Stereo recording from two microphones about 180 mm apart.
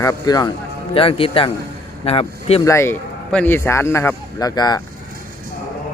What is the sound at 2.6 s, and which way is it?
Speech, 15° left (ahead or behind).